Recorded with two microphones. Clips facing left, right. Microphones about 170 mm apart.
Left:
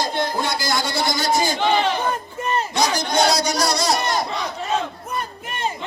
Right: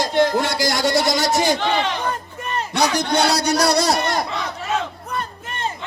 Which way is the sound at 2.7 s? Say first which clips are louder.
Right 3 dB; 65° right (ahead or behind).